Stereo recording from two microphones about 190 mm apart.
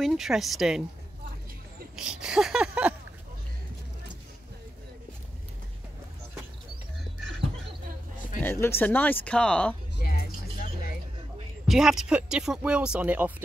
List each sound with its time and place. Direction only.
0.0 s speech: centre (ahead or behind)
2.0 s speech: 5° right (ahead or behind)
8.4 s speech: 10° left (ahead or behind)
9.9 s a sound: 50° left (ahead or behind)
11.6 s speech: centre (ahead or behind)